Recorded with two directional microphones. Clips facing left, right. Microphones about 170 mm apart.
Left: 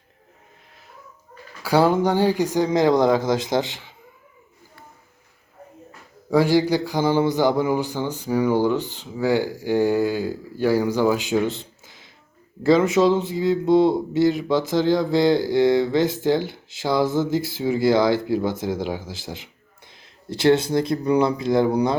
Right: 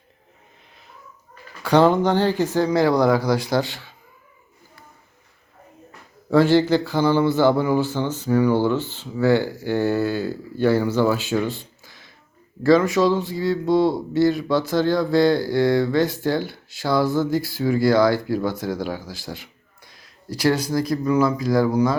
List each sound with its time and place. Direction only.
1.6 s a man's voice: 10° left (ahead or behind)
6.3 s a man's voice: 10° left (ahead or behind)